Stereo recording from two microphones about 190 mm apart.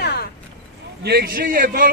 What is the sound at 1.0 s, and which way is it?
Speech, 55° right (ahead or behind).